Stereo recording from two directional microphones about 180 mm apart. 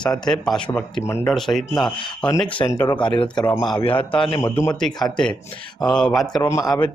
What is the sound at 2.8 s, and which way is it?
Speech, 25° left (ahead or behind).